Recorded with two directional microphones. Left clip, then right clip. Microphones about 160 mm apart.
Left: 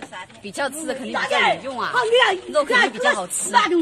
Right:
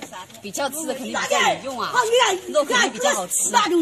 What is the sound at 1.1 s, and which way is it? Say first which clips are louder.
Speech: left 1 dB; 90° right.